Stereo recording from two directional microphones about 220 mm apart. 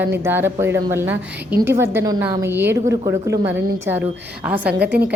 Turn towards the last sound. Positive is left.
turn(degrees=-5)  # may be behind; listen again after turning